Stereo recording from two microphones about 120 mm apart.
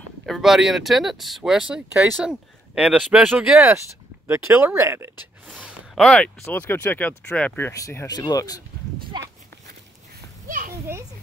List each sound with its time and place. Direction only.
0.3 s speech: centre (ahead or behind)
4.3 s speech: 20° right (ahead or behind)
5.5 s a sound: centre (ahead or behind)
6.4 s speech: 15° left (ahead or behind)
7.7 s speech: 25° left (ahead or behind)
10.7 s children playing: 25° right (ahead or behind)